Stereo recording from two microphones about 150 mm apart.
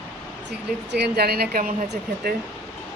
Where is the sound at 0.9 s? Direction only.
90° right.